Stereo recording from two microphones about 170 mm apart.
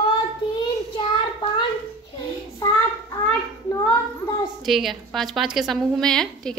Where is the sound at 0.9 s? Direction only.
30° left (ahead or behind).